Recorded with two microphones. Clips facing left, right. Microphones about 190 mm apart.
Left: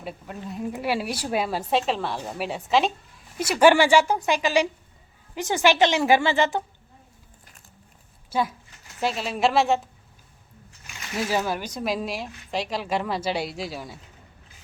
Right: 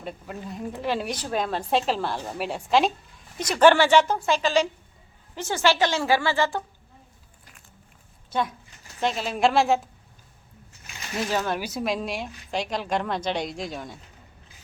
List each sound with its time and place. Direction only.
0.0 s a woman's voice: centre (ahead or behind); by 6.6 s 20° left (ahead or behind)
8.3 s a woman's voice: 5° left (ahead or behind)
11.2 s a woman's voice: 10° left (ahead or behind)
11.6 s a woman's voice: 5° right (ahead or behind)